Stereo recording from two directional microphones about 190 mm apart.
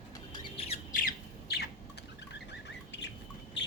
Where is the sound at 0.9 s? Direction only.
55° left (ahead or behind).